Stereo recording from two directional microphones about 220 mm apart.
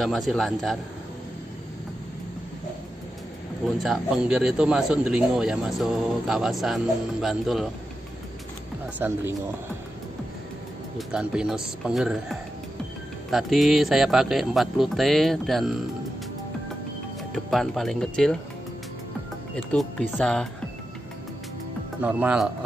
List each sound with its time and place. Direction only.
0.0 s speech: centre (ahead or behind)
3.6 s speech: centre (ahead or behind)
11.0 s speech: 5° right (ahead or behind)
17.3 s speech: centre (ahead or behind)
19.5 s speech: 5° left (ahead or behind)
22.0 s speech: 5° right (ahead or behind)